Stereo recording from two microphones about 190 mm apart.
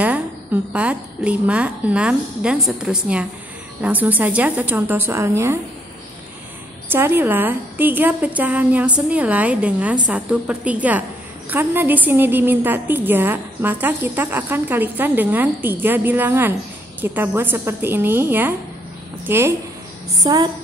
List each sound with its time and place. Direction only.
0.7 s a woman's voice: 5° right (ahead or behind)
6.9 s a woman's voice: 10° right (ahead or behind)
20.2 s a woman's voice: 20° right (ahead or behind)